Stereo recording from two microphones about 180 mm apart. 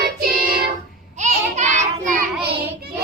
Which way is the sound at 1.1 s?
40° right (ahead or behind).